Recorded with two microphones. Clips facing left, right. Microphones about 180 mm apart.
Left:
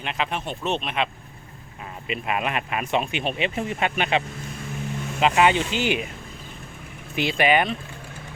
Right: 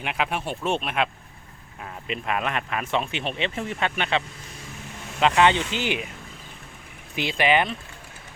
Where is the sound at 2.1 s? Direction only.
10° left (ahead or behind).